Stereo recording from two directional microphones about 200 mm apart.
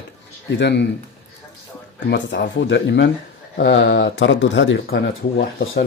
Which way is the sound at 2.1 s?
55° left (ahead or behind).